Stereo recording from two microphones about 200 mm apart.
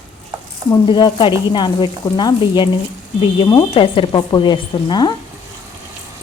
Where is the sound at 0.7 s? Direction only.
20° left (ahead or behind).